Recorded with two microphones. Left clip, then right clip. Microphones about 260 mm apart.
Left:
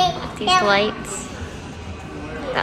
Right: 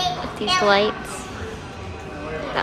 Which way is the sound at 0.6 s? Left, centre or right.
Centre.